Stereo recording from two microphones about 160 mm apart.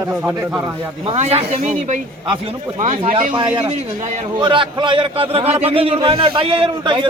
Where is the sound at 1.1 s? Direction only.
40° right (ahead or behind).